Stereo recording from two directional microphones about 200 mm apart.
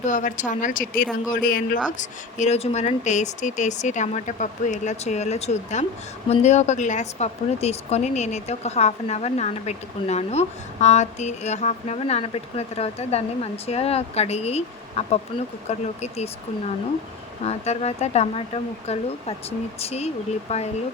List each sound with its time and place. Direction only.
0.0 s speech: 40° left (ahead or behind)
2.0 s speech: 35° left (ahead or behind)
17.4 s speech: 30° left (ahead or behind)